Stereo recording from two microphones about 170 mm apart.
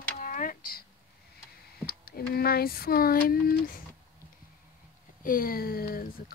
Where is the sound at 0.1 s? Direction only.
50° left (ahead or behind).